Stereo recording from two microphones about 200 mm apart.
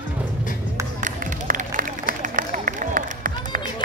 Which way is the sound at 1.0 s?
40° right (ahead or behind).